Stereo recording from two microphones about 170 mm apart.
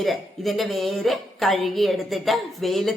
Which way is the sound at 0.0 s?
Centre (ahead or behind).